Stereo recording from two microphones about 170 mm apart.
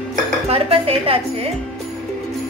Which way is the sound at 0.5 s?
35° right (ahead or behind).